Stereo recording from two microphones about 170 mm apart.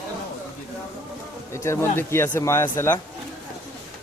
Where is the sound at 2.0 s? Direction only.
15° left (ahead or behind).